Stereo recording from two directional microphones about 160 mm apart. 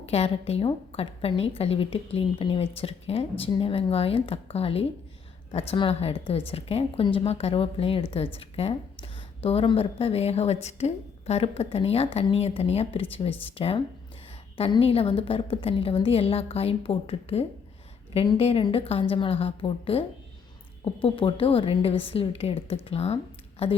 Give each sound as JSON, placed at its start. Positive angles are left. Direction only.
{"t": 0.0, "sound": "a woman's voice", "side_deg": 40}